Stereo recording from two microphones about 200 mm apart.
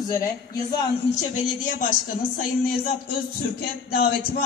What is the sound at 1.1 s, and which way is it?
Speech, 40° left (ahead or behind).